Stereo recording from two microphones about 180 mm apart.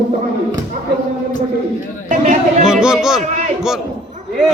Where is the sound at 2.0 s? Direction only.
40° right (ahead or behind).